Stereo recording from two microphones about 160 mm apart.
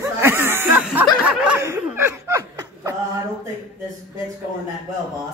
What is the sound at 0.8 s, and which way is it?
Snicker, 10° right (ahead or behind).